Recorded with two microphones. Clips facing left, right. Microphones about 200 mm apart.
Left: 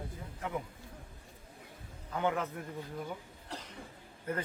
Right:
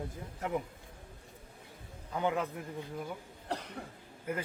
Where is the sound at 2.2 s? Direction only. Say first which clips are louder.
Even; 15° right (ahead or behind).